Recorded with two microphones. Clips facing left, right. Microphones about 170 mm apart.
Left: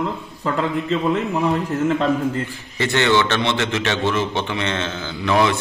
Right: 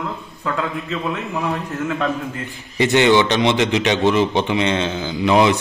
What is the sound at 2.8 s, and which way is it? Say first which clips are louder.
A man's voice: right 4 dB; 15° right (ahead or behind).